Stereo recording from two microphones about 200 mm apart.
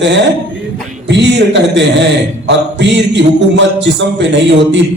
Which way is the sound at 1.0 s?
60° right (ahead or behind).